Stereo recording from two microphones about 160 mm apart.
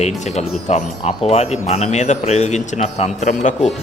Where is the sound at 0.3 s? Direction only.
45° left (ahead or behind).